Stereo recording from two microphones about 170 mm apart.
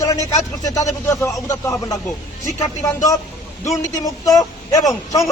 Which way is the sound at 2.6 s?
20° left (ahead or behind).